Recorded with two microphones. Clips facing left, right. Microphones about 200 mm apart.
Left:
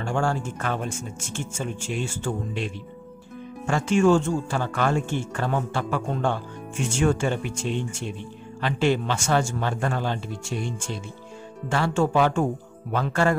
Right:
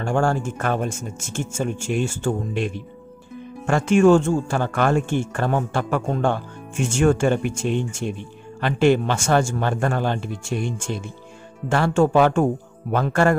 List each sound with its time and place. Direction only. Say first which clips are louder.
0.0 s speech: right 4 dB; 50° right (ahead or behind)